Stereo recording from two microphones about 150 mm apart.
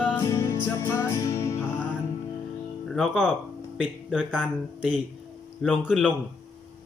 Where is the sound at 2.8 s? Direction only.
Centre (ahead or behind).